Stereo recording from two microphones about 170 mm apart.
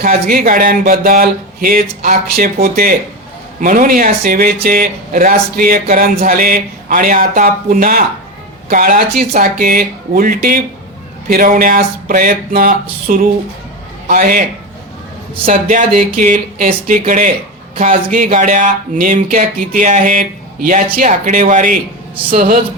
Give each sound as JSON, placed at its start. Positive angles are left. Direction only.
{"t": 0.0, "sound": "speech", "side_deg": -55}
{"t": 15.4, "sound": "speech", "side_deg": -50}